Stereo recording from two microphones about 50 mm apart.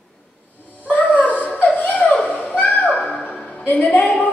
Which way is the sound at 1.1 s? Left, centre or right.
Left.